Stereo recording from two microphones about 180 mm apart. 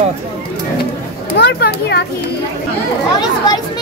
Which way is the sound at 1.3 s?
65° left (ahead or behind).